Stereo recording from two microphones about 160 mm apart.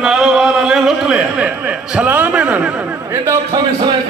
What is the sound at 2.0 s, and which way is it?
A man's voice, 10° right (ahead or behind).